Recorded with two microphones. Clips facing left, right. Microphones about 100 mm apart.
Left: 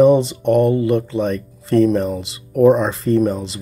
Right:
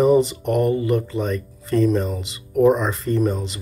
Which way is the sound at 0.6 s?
60° left (ahead or behind).